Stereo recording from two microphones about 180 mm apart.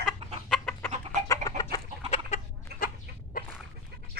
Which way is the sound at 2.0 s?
35° left (ahead or behind).